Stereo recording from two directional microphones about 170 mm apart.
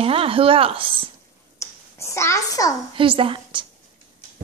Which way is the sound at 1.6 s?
15° left (ahead or behind).